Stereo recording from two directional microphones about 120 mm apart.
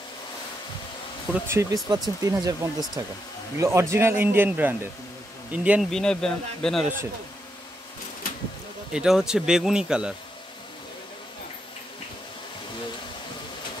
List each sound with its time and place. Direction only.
1.5 s a man's voice: 25° right (ahead or behind)
5.5 s insect: 10° right (ahead or behind)
5.9 s speech: 5° left (ahead or behind)
8.9 s speech: 5° right (ahead or behind)